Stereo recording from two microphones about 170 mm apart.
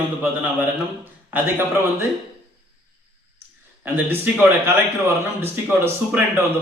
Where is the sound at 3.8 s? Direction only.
10° right (ahead or behind).